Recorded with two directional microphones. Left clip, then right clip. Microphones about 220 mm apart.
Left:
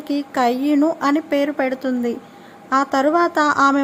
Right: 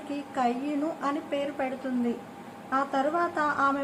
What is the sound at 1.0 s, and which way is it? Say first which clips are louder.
Speech: left 11 dB; 45° left (ahead or behind).